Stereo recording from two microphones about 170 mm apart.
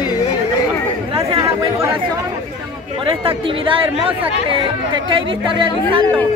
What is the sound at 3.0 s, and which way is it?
Speech, 35° right (ahead or behind).